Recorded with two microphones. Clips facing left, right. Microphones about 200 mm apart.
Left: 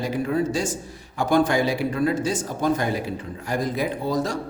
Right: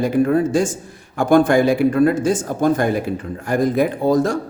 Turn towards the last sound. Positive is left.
turn(degrees=-50)  # may be behind; listen again after turning